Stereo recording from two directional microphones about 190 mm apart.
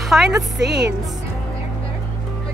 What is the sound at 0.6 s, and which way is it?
Speech, 60° right (ahead or behind).